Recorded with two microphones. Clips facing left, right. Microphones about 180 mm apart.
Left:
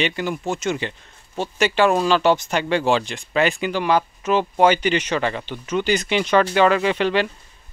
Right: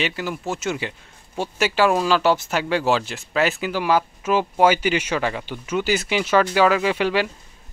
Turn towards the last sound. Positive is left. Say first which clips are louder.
# left 1 dB
turn(degrees=-10)  # may be behind; listen again after turning